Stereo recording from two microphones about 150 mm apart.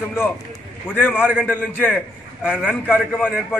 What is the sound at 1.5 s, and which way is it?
Speech, 10° left (ahead or behind).